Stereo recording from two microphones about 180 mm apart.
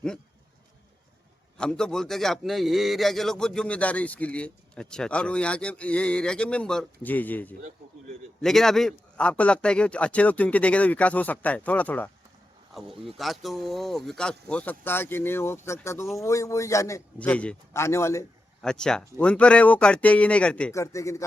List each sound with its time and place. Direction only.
1.5 s a man's voice: 5° left (ahead or behind)
18.6 s a man's voice: 5° left (ahead or behind)
20.8 s a man's voice: 15° left (ahead or behind)